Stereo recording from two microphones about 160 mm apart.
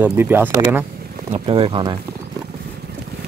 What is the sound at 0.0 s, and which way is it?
Speech, 10° right (ahead or behind).